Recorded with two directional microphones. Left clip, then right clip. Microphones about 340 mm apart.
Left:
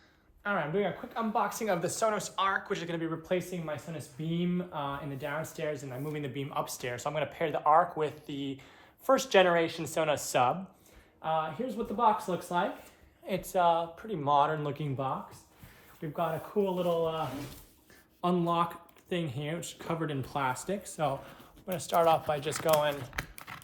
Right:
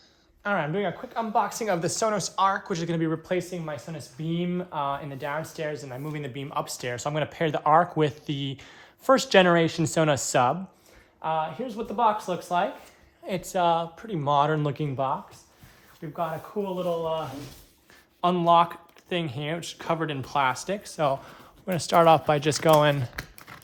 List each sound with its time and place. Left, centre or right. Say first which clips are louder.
0.4 s speech: right 4 dB; right
13.2 s speech: right 3 dB; right
16.0 s speech: right 2 dB; centre
18.2 s speech: right 9 dB; centre
23.1 s typing: even; centre